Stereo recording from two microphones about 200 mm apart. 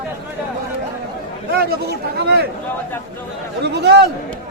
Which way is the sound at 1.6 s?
55° right (ahead or behind).